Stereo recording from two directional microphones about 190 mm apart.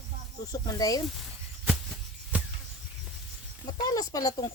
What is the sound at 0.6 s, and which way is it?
Speech, 20° left (ahead or behind).